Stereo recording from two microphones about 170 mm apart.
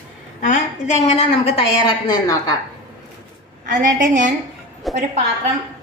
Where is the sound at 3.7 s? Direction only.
50° right (ahead or behind).